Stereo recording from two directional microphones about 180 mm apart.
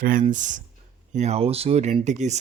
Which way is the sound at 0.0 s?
50° right (ahead or behind).